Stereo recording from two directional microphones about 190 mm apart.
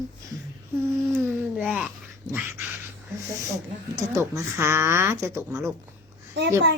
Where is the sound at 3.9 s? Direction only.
15° right (ahead or behind).